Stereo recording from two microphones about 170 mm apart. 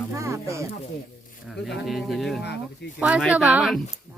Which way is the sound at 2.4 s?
80° left.